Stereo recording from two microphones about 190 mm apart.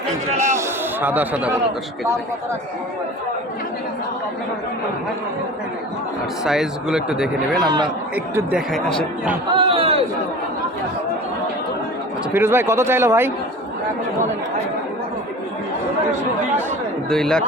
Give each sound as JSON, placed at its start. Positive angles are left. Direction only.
{"t": 1.0, "sound": "speech", "side_deg": -10}
{"t": 6.4, "sound": "speech", "side_deg": 0}
{"t": 9.5, "sound": "chatter", "side_deg": -30}
{"t": 12.3, "sound": "speech", "side_deg": -10}
{"t": 17.1, "sound": "speech", "side_deg": 5}